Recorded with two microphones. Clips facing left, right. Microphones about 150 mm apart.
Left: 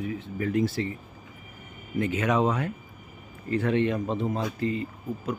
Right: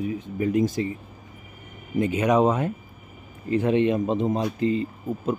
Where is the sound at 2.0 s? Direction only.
20° right (ahead or behind).